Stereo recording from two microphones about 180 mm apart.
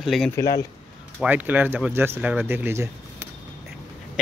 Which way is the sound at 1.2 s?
10° right (ahead or behind).